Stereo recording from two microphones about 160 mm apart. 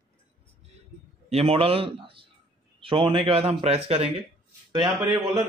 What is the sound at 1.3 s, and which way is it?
A man's voice, 35° right (ahead or behind).